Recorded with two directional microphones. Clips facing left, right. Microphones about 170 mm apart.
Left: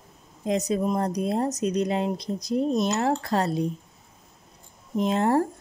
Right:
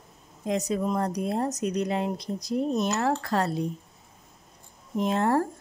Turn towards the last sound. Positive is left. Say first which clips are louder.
# left 2 dB
turn(degrees=20)  # may be behind; listen again after turning